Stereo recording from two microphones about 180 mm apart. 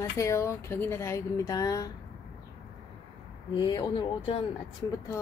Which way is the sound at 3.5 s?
25° left (ahead or behind).